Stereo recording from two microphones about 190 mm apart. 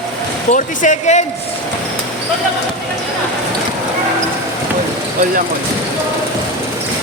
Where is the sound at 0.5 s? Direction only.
40° left (ahead or behind).